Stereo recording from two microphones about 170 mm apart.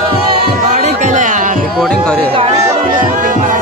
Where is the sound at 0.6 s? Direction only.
45° right (ahead or behind).